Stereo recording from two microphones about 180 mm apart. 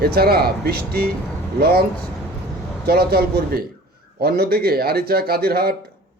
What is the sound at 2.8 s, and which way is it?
Speech, 60° right (ahead or behind).